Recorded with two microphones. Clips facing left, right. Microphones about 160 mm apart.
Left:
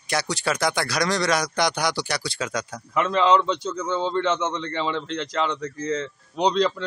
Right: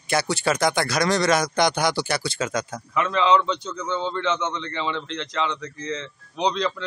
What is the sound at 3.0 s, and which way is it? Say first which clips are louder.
Speech: left 1 dB; 35° left (ahead or behind).